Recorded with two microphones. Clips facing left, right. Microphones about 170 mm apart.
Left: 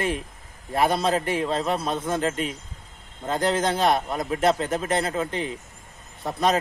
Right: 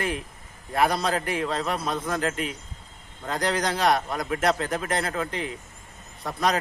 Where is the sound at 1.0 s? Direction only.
30° left (ahead or behind).